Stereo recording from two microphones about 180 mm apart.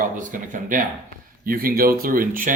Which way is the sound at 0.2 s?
45° right (ahead or behind).